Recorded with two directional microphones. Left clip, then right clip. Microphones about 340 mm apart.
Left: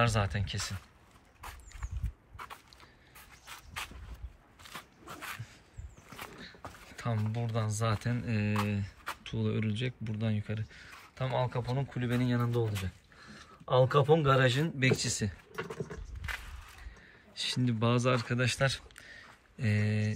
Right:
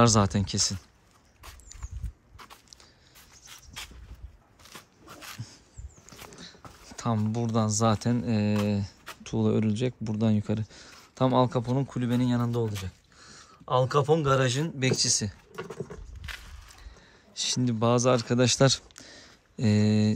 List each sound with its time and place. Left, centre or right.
0.0 s speech: centre
2.3 s walk: centre
3.4 s dog: centre
4.7 s a sound: centre
6.1 s speech: centre
15.5 s a sound: centre
17.3 s speech: centre